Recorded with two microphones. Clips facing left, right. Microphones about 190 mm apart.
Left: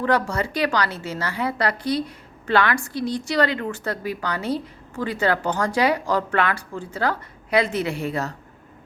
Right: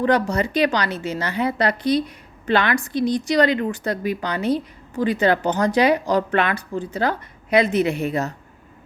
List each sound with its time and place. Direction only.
0.0 s a woman's voice: 20° right (ahead or behind)